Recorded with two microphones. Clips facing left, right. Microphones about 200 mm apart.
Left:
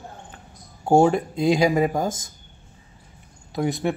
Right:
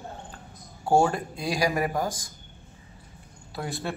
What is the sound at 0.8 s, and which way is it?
A man's voice, 20° left (ahead or behind).